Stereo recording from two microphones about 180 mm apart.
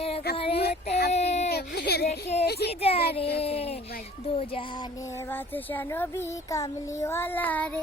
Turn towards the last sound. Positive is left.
turn(degrees=10)  # may be behind; listen again after turning